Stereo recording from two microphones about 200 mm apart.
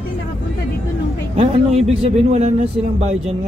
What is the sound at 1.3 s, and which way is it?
Speech, 30° right (ahead or behind).